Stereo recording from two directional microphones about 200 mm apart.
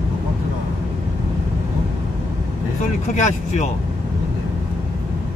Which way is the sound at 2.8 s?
35° left (ahead or behind).